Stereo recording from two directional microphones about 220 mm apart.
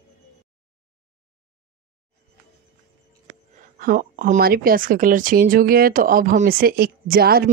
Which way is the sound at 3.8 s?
40° right (ahead or behind).